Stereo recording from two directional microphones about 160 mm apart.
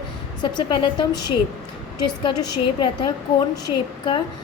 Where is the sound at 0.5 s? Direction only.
30° left (ahead or behind).